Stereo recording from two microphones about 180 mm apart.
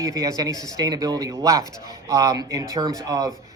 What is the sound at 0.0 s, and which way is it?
Speech, 20° right (ahead or behind).